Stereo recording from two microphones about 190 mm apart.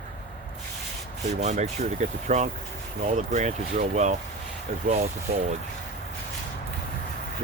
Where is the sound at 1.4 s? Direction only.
35° right (ahead or behind).